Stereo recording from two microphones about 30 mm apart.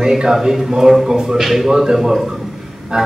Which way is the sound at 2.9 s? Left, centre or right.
Right.